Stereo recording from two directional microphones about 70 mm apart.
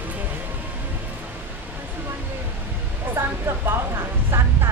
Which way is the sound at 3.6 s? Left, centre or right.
Right.